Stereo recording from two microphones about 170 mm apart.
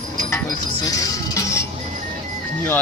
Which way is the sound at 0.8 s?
20° left (ahead or behind).